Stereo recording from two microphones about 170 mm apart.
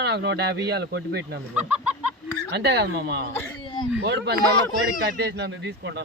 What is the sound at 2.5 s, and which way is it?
Speech, 75° right (ahead or behind).